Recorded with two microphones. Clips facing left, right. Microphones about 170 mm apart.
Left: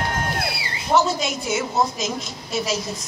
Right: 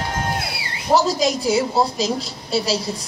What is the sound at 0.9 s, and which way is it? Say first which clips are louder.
A woman's voice: right 2 dB; 35° right (ahead or behind).